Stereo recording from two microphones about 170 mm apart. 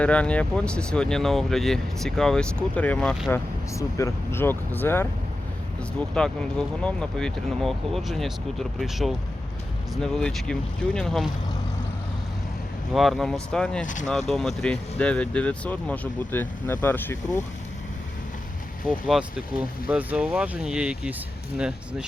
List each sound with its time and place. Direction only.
0.0 s speech: 5° left (ahead or behind)
3.8 s speech: 15° left (ahead or behind)
6.1 s speech: 5° left (ahead or behind)
12.9 s speech: centre (ahead or behind)
13.8 s speech: 45° left (ahead or behind)
14.1 s speech: centre (ahead or behind)
18.9 s speech: 5° right (ahead or behind)